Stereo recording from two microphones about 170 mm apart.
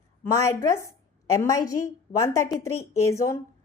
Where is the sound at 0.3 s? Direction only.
20° left (ahead or behind).